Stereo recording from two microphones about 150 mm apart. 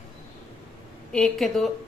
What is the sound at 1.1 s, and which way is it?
Speech, 5° left (ahead or behind).